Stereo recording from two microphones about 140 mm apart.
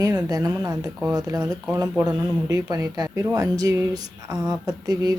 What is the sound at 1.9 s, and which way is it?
Speech, 5° right (ahead or behind).